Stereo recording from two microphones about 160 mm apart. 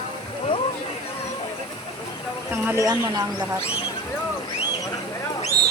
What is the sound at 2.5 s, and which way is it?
Speech, 15° right (ahead or behind).